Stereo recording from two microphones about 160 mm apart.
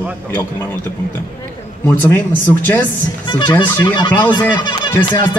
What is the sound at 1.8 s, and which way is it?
Speech, 15° left (ahead or behind).